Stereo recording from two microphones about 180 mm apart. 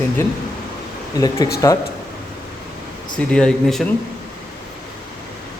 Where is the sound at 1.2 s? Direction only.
20° left (ahead or behind).